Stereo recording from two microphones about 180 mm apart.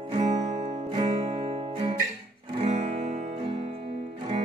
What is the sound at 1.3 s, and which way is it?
Guitar, 35° right (ahead or behind).